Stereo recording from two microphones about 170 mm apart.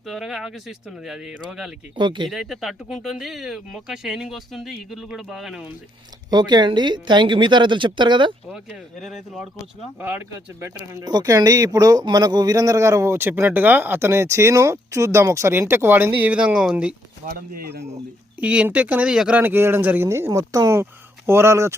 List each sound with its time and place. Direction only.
0.0 s speech: centre (ahead or behind)
2.0 s a woman's voice: 25° right (ahead or behind)
2.3 s speech: 5° right (ahead or behind)
6.3 s a woman's voice: 25° right (ahead or behind)
8.5 s speech: centre (ahead or behind)
10.0 s speech: 10° right (ahead or behind)
17.2 s speech: 55° right (ahead or behind)
17.8 s speech: 10° right (ahead or behind)